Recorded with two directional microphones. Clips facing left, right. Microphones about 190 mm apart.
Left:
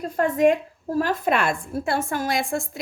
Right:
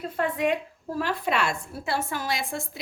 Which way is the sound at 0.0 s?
45° left (ahead or behind).